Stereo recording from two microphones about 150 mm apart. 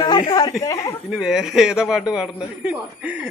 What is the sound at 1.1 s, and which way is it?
A man's voice, 5° right (ahead or behind).